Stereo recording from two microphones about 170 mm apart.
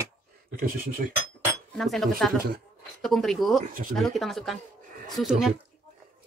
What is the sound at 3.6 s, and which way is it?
Speech, 55° right (ahead or behind).